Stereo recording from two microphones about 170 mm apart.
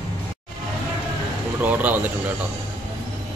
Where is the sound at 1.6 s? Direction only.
10° right (ahead or behind).